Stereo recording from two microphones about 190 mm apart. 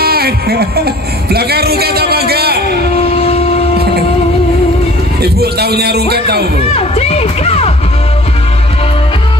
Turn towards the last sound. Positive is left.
turn(degrees=35)  # may be behind; listen again after turning